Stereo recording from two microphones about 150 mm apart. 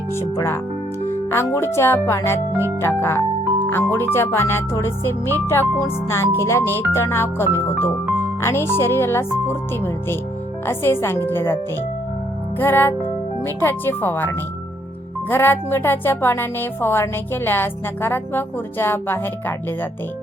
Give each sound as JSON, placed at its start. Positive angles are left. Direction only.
{"t": 0.1, "sound": "speech", "side_deg": 15}
{"t": 1.0, "sound": "music", "side_deg": 15}
{"t": 1.5, "sound": "speech", "side_deg": 15}